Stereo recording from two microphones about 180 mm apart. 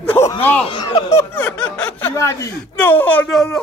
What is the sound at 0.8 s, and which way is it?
Snicker, 15° left (ahead or behind).